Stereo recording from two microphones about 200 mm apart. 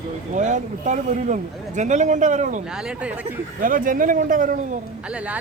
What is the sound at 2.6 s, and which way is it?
Speech, 5° right (ahead or behind).